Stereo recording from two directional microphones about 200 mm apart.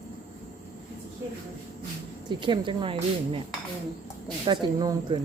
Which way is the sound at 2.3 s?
25° right (ahead or behind).